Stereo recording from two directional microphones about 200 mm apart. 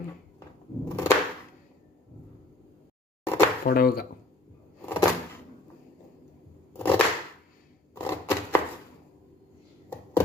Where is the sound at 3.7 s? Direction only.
50° left (ahead or behind).